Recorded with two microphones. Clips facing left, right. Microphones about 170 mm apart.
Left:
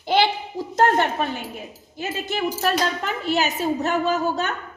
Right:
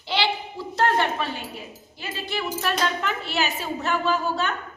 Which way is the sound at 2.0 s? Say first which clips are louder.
Left 5 dB; 45° left (ahead or behind).